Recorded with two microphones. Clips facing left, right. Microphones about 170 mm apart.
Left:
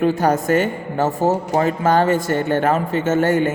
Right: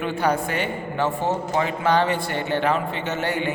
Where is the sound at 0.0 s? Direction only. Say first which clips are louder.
Left 6 dB; 40° left (ahead or behind).